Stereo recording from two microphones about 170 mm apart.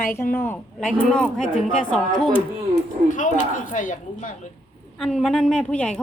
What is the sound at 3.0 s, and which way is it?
Speech, 50° left (ahead or behind).